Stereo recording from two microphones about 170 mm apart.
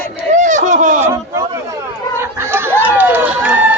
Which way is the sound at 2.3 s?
15° right (ahead or behind).